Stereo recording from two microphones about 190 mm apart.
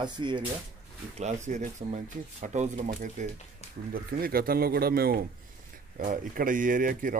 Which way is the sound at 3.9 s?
50° right (ahead or behind).